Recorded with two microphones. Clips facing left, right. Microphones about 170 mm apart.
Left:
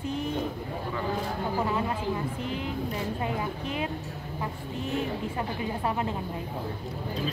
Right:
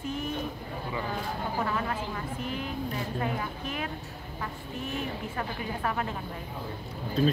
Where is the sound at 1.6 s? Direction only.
20° left (ahead or behind).